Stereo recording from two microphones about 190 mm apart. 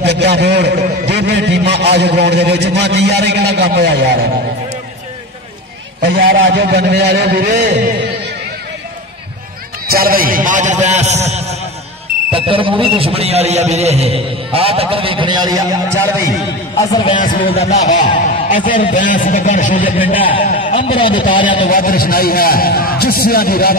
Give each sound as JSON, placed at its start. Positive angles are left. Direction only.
{"t": 0.0, "sound": "a sound", "side_deg": -60}
{"t": 1.0, "sound": "a man's voice", "side_deg": -60}
{"t": 6.0, "sound": "a man's voice", "side_deg": -60}
{"t": 9.8, "sound": "a man's voice", "side_deg": -50}
{"t": 16.9, "sound": "a man's voice", "side_deg": 25}
{"t": 17.2, "sound": "a man's voice", "side_deg": 45}
{"t": 17.6, "sound": "a man's voice", "side_deg": 35}
{"t": 20.2, "sound": "a man's voice", "side_deg": 30}
{"t": 21.4, "sound": "a man's voice", "side_deg": 45}